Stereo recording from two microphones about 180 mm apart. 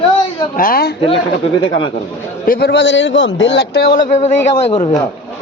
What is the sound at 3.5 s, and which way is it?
A man's voice, 60° left (ahead or behind).